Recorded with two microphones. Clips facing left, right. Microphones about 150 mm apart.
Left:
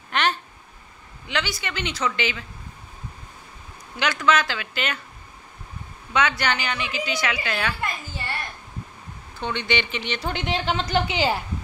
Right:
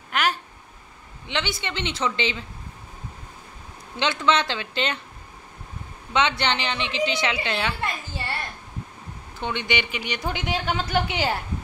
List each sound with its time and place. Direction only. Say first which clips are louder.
0.1 s a sound: left 1 dB; 5° right (ahead or behind)
1.2 s a woman's voice: even; 25° right (ahead or behind)
3.9 s a woman's voice: even; 25° right (ahead or behind)
6.1 s a woman's voice: even; 25° right (ahead or behind)
9.4 s speech: left 1 dB; 15° right (ahead or behind)